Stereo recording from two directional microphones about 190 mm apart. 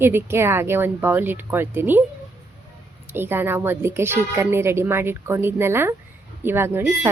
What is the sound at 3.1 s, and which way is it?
A woman's voice, 10° right (ahead or behind).